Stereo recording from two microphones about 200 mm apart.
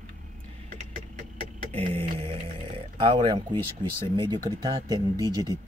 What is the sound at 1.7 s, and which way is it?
Speech, 30° right (ahead or behind).